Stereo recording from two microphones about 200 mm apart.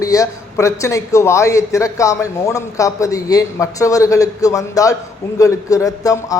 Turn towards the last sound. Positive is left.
turn(degrees=15)  # may be behind; listen again after turning